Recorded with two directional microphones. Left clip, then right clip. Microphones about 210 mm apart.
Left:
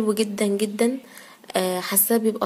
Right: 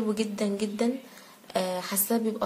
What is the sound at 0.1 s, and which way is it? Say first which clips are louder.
Speech: left 7 dB; 40° left (ahead or behind).